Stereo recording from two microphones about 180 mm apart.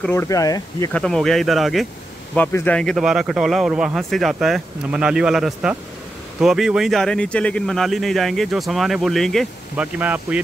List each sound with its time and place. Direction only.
0.0 s speech: 15° left (ahead or behind)
0.9 s a man's voice: centre (ahead or behind)